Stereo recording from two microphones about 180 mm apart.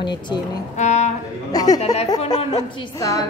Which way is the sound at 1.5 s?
20° left (ahead or behind).